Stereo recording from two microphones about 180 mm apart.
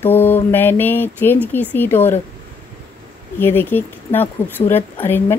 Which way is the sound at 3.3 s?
10° left (ahead or behind).